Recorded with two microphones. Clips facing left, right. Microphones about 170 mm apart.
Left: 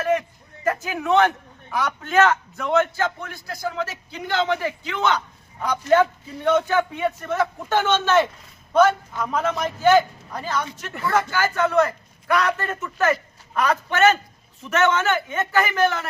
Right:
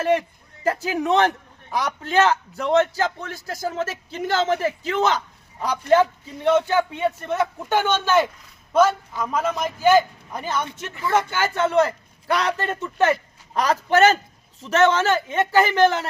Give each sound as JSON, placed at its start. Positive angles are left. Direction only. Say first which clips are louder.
{"t": 0.0, "sound": "a man's voice", "louder": "right 2 dB", "side_deg": -30}
{"t": 5.9, "sound": "a man's voice", "louder": "even", "side_deg": -30}